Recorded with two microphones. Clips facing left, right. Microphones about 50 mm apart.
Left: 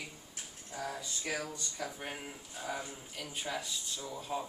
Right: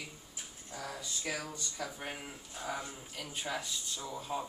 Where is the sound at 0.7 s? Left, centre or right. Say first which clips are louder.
Left 3 dB; centre.